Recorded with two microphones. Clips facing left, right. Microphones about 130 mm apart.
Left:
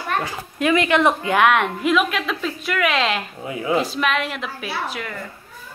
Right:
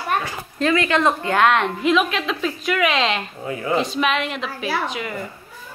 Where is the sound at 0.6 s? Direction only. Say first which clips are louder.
Left 1 dB; 15° left (ahead or behind); by 3.2 s centre (ahead or behind).